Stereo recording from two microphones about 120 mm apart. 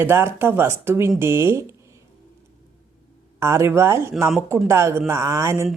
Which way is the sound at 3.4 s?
20° right (ahead or behind).